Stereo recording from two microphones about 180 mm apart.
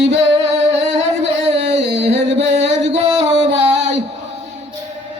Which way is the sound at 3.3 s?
75° right (ahead or behind).